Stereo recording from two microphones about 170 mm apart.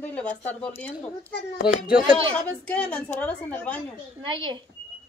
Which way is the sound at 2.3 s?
10° left (ahead or behind).